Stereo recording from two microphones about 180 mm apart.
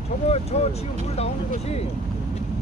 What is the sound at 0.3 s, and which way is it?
Speech, 35° left (ahead or behind).